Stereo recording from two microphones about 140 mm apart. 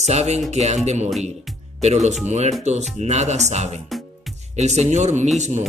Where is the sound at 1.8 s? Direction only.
55° right (ahead or behind).